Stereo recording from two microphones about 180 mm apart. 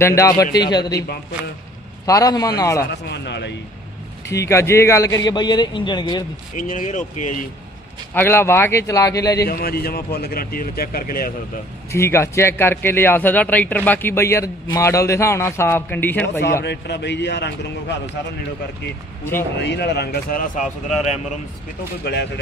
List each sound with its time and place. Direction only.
0.0 s a man's voice: 15° left (ahead or behind)
0.9 s a man's voice: 60° left (ahead or behind)
2.0 s a man's voice: 20° left (ahead or behind)
2.8 s a man's voice: 70° left (ahead or behind)
4.3 s a man's voice: 15° left (ahead or behind)
6.5 s speech: 45° left (ahead or behind)
8.1 s speech: 10° left (ahead or behind)
9.4 s a man's voice: 60° left (ahead or behind)
11.9 s speech: 15° left (ahead or behind)
16.6 s a man's voice: 70° left (ahead or behind)
19.6 s a man's voice: 70° left (ahead or behind); by 21.1 s 45° left (ahead or behind)
22.0 s a man's voice: 65° left (ahead or behind)